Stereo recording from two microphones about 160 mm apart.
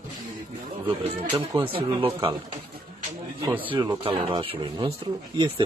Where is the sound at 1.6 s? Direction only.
35° right (ahead or behind).